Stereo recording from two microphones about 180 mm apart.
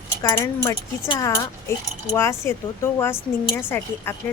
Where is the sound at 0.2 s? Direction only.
15° left (ahead or behind).